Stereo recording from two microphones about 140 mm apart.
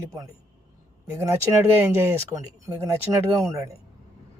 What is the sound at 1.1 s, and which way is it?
Speech, 20° right (ahead or behind).